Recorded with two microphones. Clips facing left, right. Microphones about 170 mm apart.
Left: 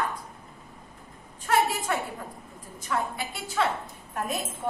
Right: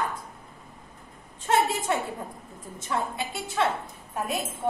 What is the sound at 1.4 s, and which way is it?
A woman's voice, 25° right (ahead or behind).